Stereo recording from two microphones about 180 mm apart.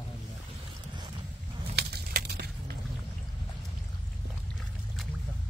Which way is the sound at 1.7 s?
65° right (ahead or behind).